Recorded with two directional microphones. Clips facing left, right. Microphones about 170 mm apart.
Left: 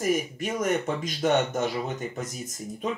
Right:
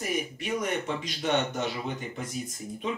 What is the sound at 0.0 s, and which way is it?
Speech, 45° left (ahead or behind).